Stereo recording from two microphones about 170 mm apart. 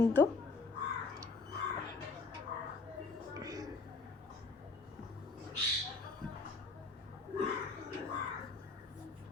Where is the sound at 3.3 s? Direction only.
20° right (ahead or behind).